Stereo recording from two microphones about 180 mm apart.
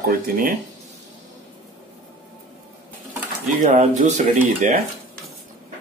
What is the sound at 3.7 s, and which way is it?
Speech, 40° right (ahead or behind).